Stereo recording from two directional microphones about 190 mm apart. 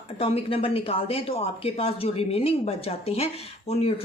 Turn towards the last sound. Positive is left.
turn(degrees=30)  # may be behind; listen again after turning